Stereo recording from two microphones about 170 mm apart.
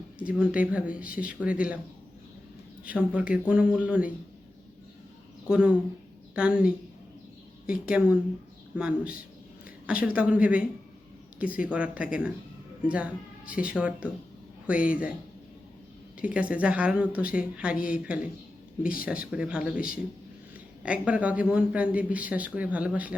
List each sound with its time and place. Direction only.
0.3 s a man's voice: 10° right (ahead or behind)
2.8 s a man's voice: 10° right (ahead or behind)
5.5 s a man's voice: 5° right (ahead or behind)
16.2 s a man's voice: 5° right (ahead or behind)
18.8 s speech: 55° left (ahead or behind)
19.3 s a man's voice: 5° right (ahead or behind)